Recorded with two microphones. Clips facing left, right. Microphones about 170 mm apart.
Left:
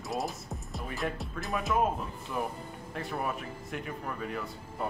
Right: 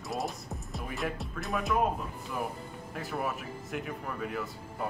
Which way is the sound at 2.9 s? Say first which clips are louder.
Even; centre (ahead or behind).